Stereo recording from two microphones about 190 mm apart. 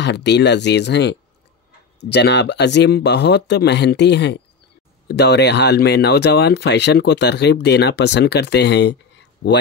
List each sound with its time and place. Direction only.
0.0 s speech: 65° left (ahead or behind)